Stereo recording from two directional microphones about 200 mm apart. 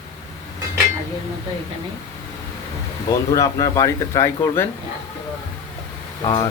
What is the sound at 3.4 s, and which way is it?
Speech, 15° left (ahead or behind).